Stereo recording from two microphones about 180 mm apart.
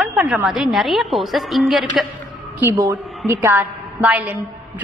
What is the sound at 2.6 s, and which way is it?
A woman's voice, 15° right (ahead or behind).